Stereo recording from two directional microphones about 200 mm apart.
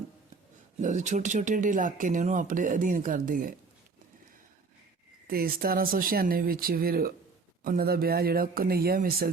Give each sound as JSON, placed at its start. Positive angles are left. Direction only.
{"t": 0.8, "sound": "speech", "side_deg": -40}
{"t": 5.3, "sound": "speech", "side_deg": -45}